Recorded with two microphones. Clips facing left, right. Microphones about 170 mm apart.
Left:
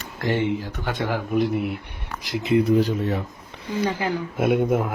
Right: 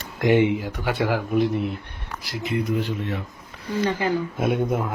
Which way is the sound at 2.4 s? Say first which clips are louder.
Left 6 dB; 30° left (ahead or behind).